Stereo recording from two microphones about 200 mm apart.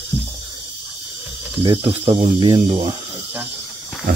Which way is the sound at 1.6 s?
30° right (ahead or behind).